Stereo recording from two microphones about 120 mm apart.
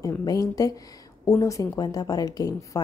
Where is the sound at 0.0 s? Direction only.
30° left (ahead or behind).